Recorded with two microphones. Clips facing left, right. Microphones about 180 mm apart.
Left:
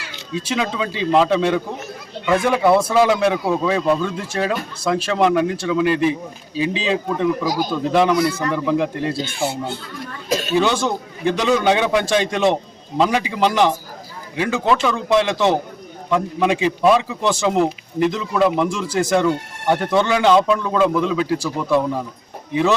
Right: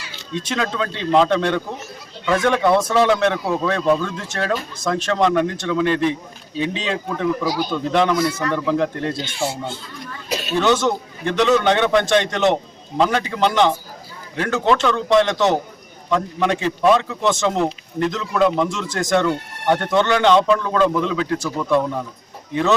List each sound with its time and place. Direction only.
0.3 s a man's voice: 5° left (ahead or behind)
7.4 s speech: 45° left (ahead or behind)
7.7 s a man's voice: 5° left (ahead or behind)
10.2 s a sound: 45° left (ahead or behind)
10.5 s a man's voice: 10° left (ahead or behind)